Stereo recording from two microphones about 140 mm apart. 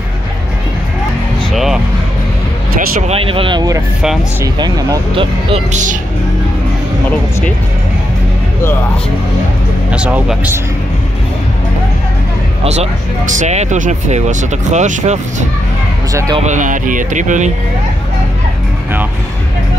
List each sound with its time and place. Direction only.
1.5 s music: centre (ahead or behind)
3.0 s speech: 45° right (ahead or behind)
5.7 s speech: 60° right (ahead or behind)
9.8 s speech: 10° right (ahead or behind)
12.6 s speech: 50° right (ahead or behind)
16.1 s speech: 25° right (ahead or behind)
16.4 s speech: 65° right (ahead or behind)